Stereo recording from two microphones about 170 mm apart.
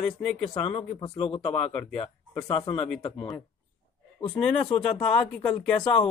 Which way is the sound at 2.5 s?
30° left (ahead or behind).